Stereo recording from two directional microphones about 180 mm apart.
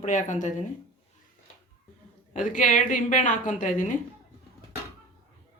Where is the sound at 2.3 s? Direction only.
45° left (ahead or behind).